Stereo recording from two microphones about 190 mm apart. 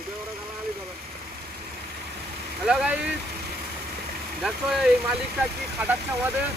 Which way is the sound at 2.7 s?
5° right (ahead or behind).